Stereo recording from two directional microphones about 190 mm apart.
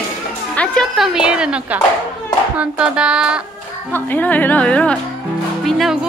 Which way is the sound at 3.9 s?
10° left (ahead or behind).